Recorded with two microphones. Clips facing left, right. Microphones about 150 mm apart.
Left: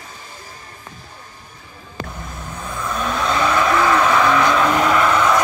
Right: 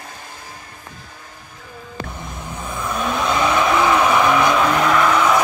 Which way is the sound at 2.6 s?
10° right (ahead or behind).